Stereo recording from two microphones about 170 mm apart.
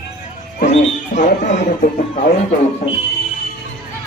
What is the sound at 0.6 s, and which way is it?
Speech, 45° left (ahead or behind).